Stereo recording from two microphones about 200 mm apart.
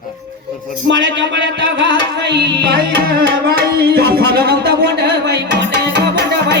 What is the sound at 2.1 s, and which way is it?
Music, 60° right (ahead or behind).